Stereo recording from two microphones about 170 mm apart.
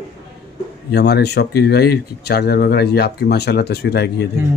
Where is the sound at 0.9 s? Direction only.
75° left (ahead or behind).